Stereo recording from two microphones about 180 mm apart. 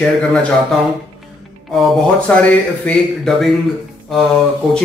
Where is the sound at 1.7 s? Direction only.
Centre (ahead or behind).